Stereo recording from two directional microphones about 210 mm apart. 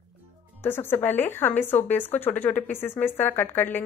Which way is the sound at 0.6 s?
10° left (ahead or behind).